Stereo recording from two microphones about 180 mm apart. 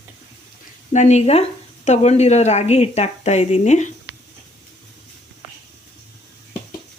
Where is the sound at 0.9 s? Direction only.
40° left (ahead or behind).